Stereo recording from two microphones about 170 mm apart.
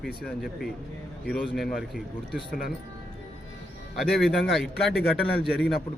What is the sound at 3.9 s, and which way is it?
Speech, centre (ahead or behind).